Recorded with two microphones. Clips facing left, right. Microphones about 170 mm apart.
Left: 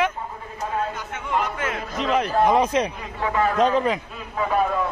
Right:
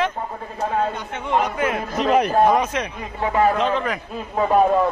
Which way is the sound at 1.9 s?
45° right (ahead or behind).